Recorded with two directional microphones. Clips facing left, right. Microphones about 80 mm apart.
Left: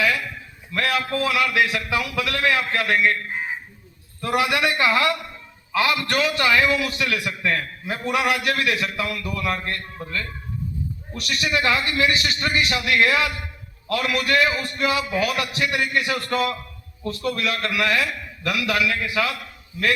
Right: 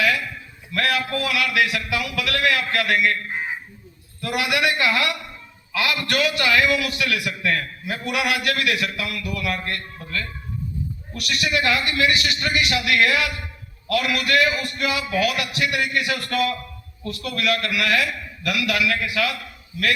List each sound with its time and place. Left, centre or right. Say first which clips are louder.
0.7 s a man's voice: even; left
4.2 s a man's voice: left 1 dB; left